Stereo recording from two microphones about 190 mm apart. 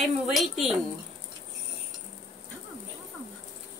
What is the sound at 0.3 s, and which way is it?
Speech, centre (ahead or behind).